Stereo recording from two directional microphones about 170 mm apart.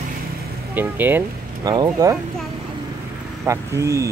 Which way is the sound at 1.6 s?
25° right (ahead or behind).